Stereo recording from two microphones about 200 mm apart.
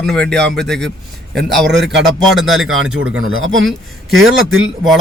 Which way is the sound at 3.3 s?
80° right.